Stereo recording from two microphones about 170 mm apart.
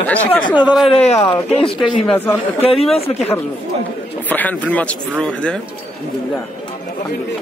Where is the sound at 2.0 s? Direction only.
10° left (ahead or behind).